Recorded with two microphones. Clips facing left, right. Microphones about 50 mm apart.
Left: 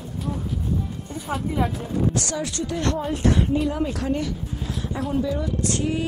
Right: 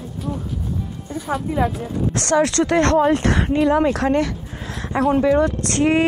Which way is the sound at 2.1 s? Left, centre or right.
Right.